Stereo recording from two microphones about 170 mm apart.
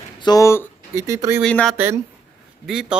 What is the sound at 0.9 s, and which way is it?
Speech, 15° right (ahead or behind).